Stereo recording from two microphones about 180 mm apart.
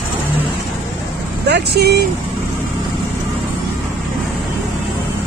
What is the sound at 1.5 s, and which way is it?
Speech, 65° right (ahead or behind).